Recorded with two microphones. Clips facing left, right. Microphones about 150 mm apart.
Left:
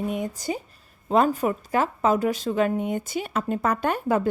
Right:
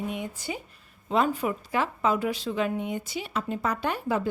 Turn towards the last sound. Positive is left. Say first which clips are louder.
# left 4 dB
turn(degrees=50)  # may be behind; listen again after turning